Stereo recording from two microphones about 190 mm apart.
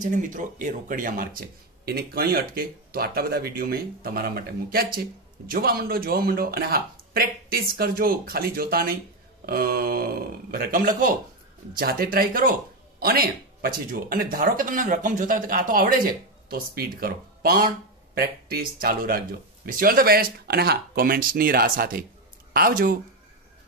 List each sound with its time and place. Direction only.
0.0 s speech: 45° right (ahead or behind)